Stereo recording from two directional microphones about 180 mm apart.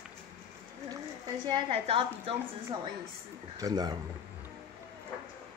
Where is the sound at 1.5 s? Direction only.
30° right (ahead or behind).